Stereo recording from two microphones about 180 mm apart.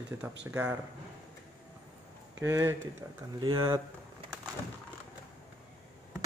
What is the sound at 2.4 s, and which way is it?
Speech, 15° right (ahead or behind).